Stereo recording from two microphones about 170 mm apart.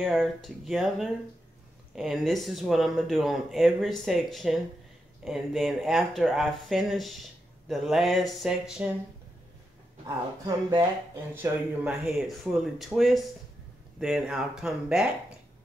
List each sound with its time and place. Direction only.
0.0 s speech: centre (ahead or behind)
10.0 s a woman's voice: 20° right (ahead or behind)
11.3 s speech: 10° right (ahead or behind)